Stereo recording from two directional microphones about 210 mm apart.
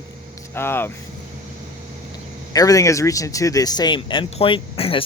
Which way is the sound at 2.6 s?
15° left (ahead or behind).